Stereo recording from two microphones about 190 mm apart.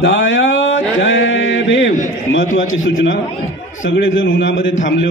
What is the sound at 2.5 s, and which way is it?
A man's voice, 90° left.